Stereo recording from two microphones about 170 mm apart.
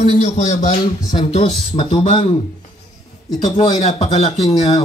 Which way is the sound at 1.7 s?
35° left (ahead or behind).